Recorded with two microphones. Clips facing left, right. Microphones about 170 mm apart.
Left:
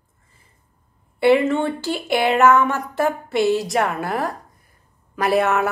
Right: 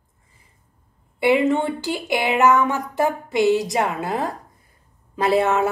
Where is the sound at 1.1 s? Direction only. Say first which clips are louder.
Left 2 dB; 15° right (ahead or behind).